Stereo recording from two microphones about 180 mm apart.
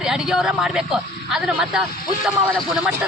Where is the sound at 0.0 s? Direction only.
5° right (ahead or behind).